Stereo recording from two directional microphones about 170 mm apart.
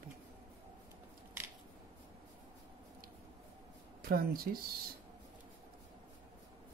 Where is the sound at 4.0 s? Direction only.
60° right (ahead or behind).